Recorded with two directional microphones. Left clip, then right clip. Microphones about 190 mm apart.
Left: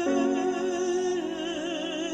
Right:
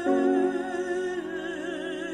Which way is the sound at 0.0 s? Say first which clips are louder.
Right 2 dB; 10° left (ahead or behind).